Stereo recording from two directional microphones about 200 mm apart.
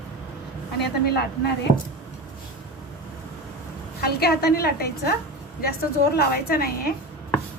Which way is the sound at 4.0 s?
50° left (ahead or behind).